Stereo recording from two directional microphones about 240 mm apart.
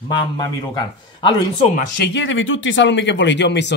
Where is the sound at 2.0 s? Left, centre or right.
Left.